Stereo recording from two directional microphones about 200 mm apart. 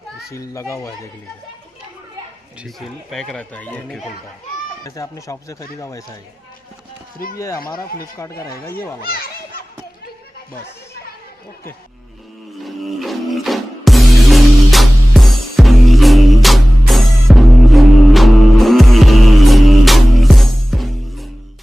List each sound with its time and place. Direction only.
0.3 s speech: 15° left (ahead or behind)
2.6 s speech: centre (ahead or behind)
4.8 s speech: 15° left (ahead or behind)
7.3 s speech: 15° left (ahead or behind)
9.0 s children playing: 50° left (ahead or behind)
12.6 s music: centre (ahead or behind)